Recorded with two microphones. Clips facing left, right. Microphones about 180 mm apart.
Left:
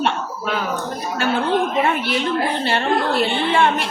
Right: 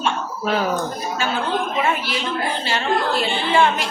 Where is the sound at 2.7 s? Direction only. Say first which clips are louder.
Even; 60° left (ahead or behind).